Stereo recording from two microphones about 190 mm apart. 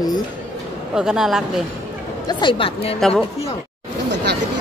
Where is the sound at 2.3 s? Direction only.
25° left (ahead or behind).